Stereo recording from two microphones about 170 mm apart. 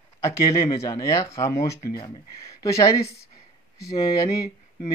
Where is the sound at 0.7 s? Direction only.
20° left (ahead or behind).